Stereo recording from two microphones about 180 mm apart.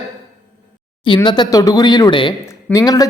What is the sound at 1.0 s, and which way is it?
Speech, 25° left (ahead or behind).